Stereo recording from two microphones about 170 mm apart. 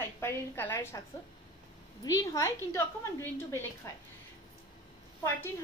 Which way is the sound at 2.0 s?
20° left (ahead or behind).